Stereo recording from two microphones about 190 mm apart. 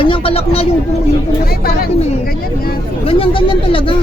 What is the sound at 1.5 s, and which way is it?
Speech, 50° left (ahead or behind).